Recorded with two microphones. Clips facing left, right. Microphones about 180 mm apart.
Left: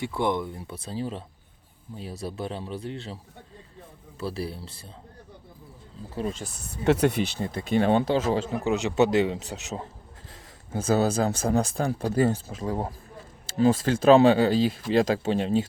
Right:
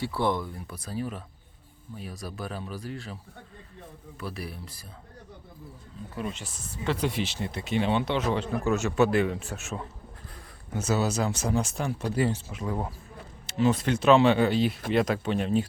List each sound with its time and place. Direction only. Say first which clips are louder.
0.0 s speech: left 1 dB; 20° left (ahead or behind)
4.2 s speech: left 5 dB; 30° left (ahead or behind)
6.0 s speech: left 4 dB; 30° left (ahead or behind)
6.8 s speech: left 7 dB; 70° left (ahead or behind)
7.3 s speech: left 4 dB; 45° left (ahead or behind)
11.1 s speech: left 3 dB; 50° left (ahead or behind)
11.6 s speech: left 4 dB; 35° left (ahead or behind)